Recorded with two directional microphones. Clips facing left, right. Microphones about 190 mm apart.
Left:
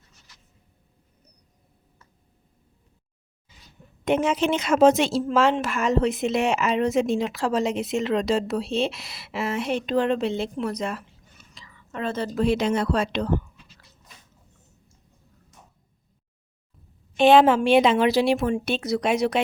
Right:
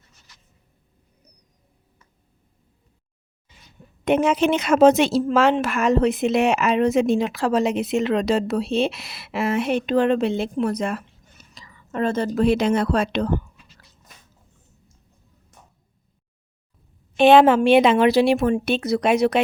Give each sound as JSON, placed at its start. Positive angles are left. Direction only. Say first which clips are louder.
{"t": 4.0, "sound": "a woman's voice", "louder": "right 3 dB", "side_deg": -60}
{"t": 17.2, "sound": "a woman's voice", "louder": "right 3 dB", "side_deg": -60}